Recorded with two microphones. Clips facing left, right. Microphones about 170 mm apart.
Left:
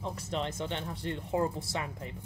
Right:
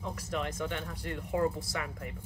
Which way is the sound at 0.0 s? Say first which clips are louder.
Left 1 dB; 25° left (ahead or behind).